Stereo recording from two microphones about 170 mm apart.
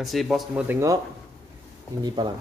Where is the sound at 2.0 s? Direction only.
25° right (ahead or behind).